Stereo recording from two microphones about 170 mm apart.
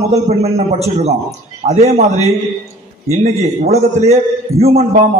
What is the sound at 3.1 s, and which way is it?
A man's voice, 40° right (ahead or behind).